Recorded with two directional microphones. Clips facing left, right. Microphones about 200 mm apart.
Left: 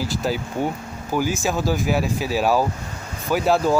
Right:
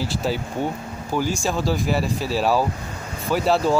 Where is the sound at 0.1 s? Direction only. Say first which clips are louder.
Even; centre (ahead or behind).